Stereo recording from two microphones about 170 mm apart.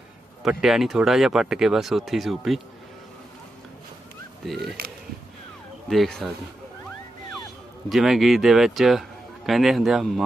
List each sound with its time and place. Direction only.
0.4 s speech: 5° right (ahead or behind)
4.6 s speech: 65° right (ahead or behind)
5.9 s speech: centre (ahead or behind)
7.9 s speech: centre (ahead or behind)